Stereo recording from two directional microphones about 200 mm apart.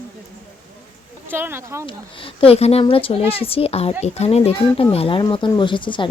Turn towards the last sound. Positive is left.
turn(degrees=25)  # may be behind; listen again after turning